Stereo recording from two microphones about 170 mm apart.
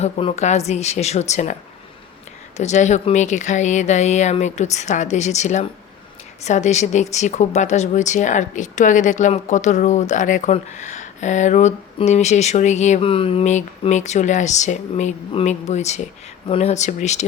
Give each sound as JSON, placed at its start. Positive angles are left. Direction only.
{"t": 0.0, "sound": "speech", "side_deg": 35}
{"t": 2.6, "sound": "speech", "side_deg": 45}